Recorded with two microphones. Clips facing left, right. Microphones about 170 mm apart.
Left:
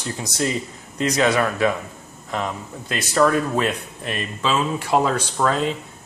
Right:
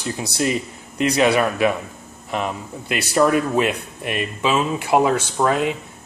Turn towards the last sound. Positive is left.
turn(degrees=-10)  # may be behind; listen again after turning